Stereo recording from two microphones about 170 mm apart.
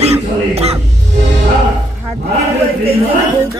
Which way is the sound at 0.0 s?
35° right (ahead or behind).